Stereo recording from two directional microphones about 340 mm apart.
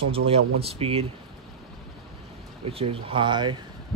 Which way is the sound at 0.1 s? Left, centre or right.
Centre.